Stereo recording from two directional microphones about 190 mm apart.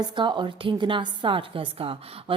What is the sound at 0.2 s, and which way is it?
A woman's voice, 25° right (ahead or behind).